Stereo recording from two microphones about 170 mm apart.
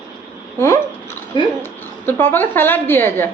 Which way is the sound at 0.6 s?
15° left (ahead or behind).